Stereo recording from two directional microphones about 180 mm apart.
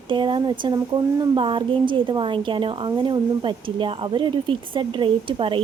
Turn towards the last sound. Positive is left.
turn(degrees=-30)  # may be behind; listen again after turning